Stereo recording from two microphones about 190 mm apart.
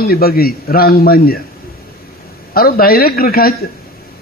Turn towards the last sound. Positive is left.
turn(degrees=50)  # may be behind; listen again after turning